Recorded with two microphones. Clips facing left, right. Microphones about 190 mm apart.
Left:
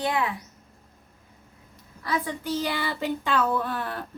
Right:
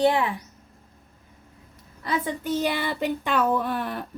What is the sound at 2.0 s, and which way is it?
Speech, 20° right (ahead or behind).